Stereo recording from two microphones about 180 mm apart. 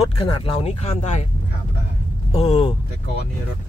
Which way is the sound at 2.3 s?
30° left (ahead or behind).